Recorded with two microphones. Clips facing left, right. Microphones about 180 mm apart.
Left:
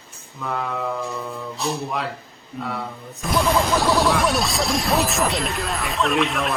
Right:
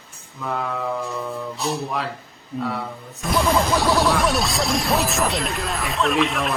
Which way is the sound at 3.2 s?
Centre (ahead or behind).